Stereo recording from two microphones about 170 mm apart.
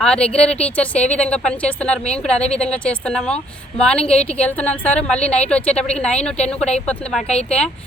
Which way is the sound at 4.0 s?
40° left (ahead or behind).